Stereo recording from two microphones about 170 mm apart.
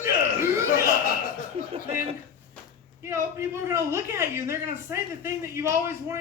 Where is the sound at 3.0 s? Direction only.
15° right (ahead or behind).